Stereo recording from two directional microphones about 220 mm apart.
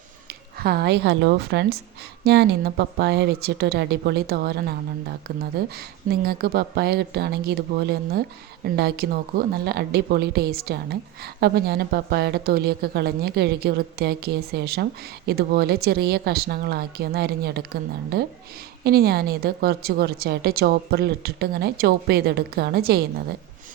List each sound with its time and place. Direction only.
0.6 s a woman's voice: 45° right (ahead or behind)